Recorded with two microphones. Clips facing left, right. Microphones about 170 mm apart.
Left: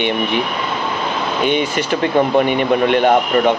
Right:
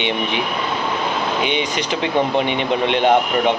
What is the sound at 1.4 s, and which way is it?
Speech, 50° left (ahead or behind).